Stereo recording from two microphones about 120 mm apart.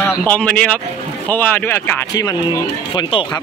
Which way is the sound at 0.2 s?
10° left (ahead or behind).